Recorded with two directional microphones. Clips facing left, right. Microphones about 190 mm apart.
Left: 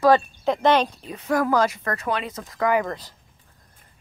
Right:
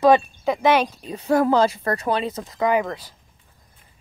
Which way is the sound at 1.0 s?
30° right (ahead or behind).